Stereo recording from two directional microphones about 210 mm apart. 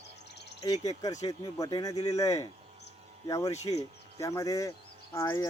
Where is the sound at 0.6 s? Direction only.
15° left (ahead or behind).